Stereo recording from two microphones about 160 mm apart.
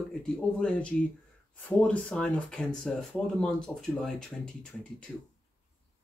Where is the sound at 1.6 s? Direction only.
10° left (ahead or behind).